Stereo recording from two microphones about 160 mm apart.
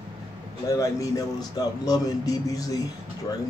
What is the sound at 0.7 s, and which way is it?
Speech, 20° left (ahead or behind).